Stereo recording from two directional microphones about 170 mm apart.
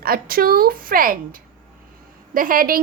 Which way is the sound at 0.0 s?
60° right (ahead or behind).